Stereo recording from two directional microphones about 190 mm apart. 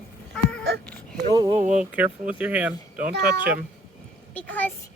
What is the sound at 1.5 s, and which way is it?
Speech, 40° right (ahead or behind).